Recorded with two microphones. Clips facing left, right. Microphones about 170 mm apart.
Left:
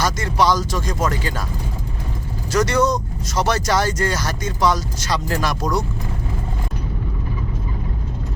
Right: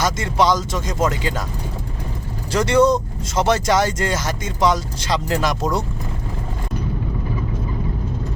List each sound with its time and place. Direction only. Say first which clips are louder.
0.0 s speech: even; 25° right (ahead or behind)
2.5 s speech: right 3 dB; 25° right (ahead or behind)